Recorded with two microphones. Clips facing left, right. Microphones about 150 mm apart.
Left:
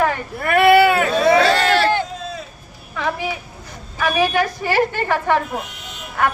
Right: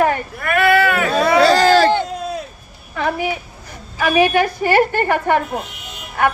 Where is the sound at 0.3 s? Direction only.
30° left (ahead or behind).